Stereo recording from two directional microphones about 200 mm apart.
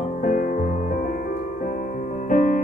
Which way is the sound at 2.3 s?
40° left (ahead or behind).